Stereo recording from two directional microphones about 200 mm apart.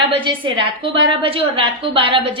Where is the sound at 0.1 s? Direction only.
25° right (ahead or behind).